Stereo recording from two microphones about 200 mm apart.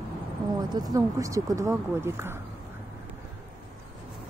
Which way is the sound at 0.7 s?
20° right (ahead or behind).